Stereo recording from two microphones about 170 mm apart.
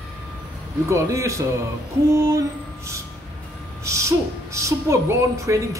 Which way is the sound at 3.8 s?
15° right (ahead or behind).